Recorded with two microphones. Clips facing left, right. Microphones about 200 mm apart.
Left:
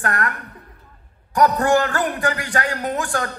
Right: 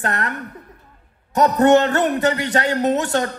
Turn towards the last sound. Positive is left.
turn(degrees=-25)  # may be behind; listen again after turning